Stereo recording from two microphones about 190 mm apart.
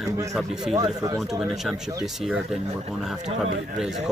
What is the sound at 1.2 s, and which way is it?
Speech, centre (ahead or behind).